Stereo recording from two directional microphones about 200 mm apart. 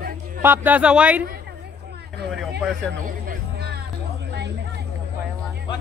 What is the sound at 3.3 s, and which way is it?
Music, 50° right (ahead or behind).